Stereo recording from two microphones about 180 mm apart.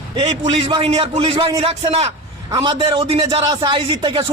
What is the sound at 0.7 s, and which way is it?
A man's voice, 25° right (ahead or behind).